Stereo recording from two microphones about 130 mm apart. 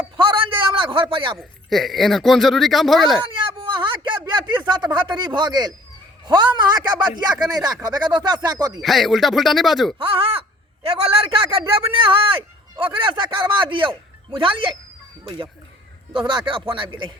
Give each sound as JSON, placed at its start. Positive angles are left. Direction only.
{"t": 0.2, "sound": "a sound", "side_deg": -40}
{"t": 1.4, "sound": "speech", "side_deg": 0}
{"t": 3.3, "sound": "a sound", "side_deg": -40}
{"t": 6.2, "sound": "speech", "side_deg": -35}
{"t": 8.8, "sound": "speech", "side_deg": 0}
{"t": 10.0, "sound": "speech", "side_deg": -45}
{"t": 16.1, "sound": "speech", "side_deg": -40}